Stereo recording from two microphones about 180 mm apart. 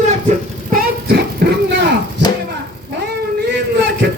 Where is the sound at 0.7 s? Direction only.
60° right (ahead or behind).